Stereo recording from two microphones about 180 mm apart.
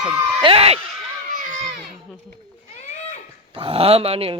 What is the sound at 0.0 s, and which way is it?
Speech, 15° right (ahead or behind).